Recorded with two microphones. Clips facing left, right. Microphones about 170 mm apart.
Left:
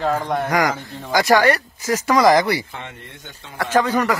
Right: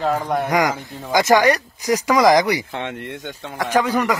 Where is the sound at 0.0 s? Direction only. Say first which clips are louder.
Right 1 dB; centre (ahead or behind).